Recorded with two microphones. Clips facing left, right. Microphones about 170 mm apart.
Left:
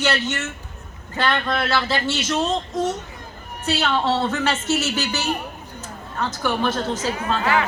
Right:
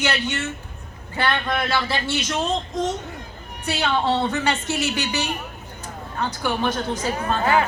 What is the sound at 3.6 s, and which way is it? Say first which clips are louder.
A woman's voice: left 1 dB; 15° right (ahead or behind).